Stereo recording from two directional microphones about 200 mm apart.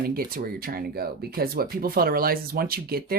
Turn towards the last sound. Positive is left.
turn(degrees=-50)  # may be behind; listen again after turning